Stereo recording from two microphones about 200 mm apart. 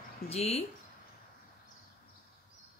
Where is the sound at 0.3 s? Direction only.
30° left (ahead or behind).